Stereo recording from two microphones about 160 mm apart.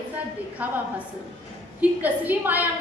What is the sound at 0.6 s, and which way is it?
Speech, 10° right (ahead or behind).